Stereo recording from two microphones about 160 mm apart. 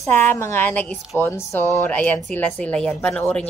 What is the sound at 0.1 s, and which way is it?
A man's voice, 15° left (ahead or behind).